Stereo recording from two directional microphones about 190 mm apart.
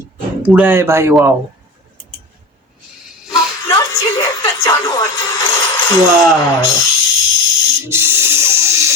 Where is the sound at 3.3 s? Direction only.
15° left (ahead or behind).